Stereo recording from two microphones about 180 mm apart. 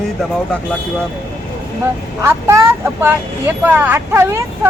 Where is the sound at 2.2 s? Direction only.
15° right (ahead or behind).